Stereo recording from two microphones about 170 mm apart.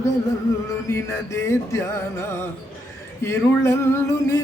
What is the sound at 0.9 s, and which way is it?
Music, 15° left (ahead or behind).